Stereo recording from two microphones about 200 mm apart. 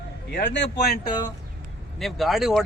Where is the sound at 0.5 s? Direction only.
55° left (ahead or behind).